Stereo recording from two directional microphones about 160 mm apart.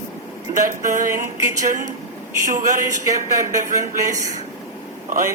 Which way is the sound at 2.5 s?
55° right (ahead or behind).